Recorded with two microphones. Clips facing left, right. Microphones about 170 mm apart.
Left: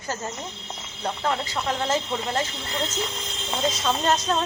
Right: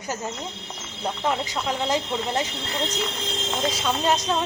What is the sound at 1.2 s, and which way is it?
Speech, 15° right (ahead or behind).